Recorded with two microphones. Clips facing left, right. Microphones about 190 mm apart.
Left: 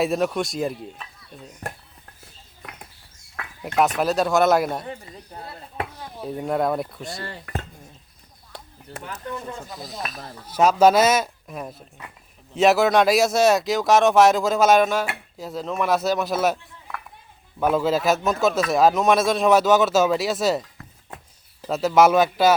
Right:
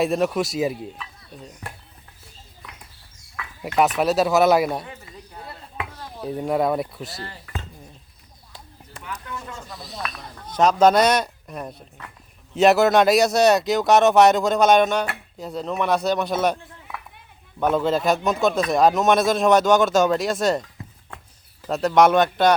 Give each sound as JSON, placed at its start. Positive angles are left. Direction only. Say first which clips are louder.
{"t": 0.0, "sound": "speech", "louder": "right 1 dB", "side_deg": 0}
{"t": 1.6, "sound": "a sound", "louder": "left 4 dB", "side_deg": 45}
{"t": 3.8, "sound": "speech", "louder": "right 1 dB", "side_deg": 0}
{"t": 4.9, "sound": "speech", "louder": "left 5 dB", "side_deg": 35}
{"t": 6.0, "sound": "speech", "louder": "right 2 dB", "side_deg": 0}
{"t": 7.3, "sound": "a sound", "louder": "left 4 dB", "side_deg": 60}
{"t": 9.2, "sound": "speech", "louder": "left 4 dB", "side_deg": 35}
{"t": 9.6, "sound": "speech", "louder": "even", "side_deg": 0}
{"t": 21.7, "sound": "speech", "louder": "even", "side_deg": 0}